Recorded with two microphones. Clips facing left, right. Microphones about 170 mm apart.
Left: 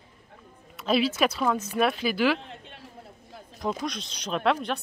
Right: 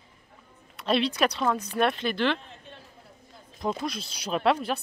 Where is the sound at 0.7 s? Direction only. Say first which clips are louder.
Left 1 dB; centre (ahead or behind).